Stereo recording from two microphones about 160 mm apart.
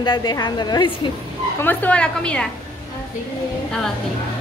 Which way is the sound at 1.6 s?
10° left (ahead or behind).